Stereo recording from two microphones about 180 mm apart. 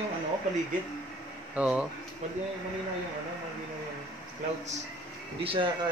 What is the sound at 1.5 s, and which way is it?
Speech, 5° right (ahead or behind).